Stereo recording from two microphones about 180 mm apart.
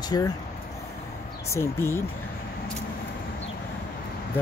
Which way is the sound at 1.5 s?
15° left (ahead or behind).